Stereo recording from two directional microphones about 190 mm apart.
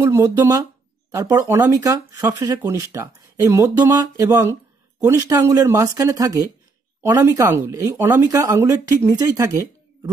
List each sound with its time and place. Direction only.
0.0 s speech: 15° right (ahead or behind)